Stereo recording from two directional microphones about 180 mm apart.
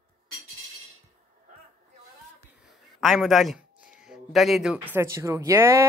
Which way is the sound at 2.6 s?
Centre (ahead or behind).